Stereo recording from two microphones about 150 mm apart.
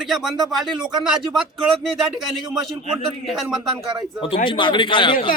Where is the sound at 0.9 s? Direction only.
30° right (ahead or behind).